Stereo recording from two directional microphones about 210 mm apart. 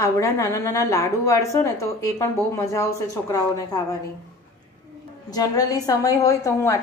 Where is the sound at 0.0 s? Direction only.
15° left (ahead or behind).